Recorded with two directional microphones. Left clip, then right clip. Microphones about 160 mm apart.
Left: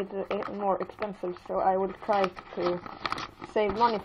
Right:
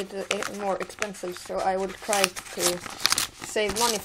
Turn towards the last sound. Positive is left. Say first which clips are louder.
# even
turn(degrees=-25)  # may be behind; listen again after turning